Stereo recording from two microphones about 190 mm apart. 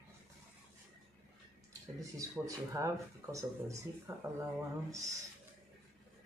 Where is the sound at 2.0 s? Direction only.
15° right (ahead or behind).